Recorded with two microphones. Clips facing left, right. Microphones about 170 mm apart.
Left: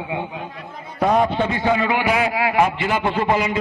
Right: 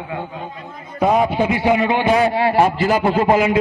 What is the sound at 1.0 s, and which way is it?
A man's voice, 5° right (ahead or behind).